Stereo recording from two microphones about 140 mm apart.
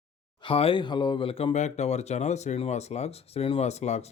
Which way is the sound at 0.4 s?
40° left (ahead or behind).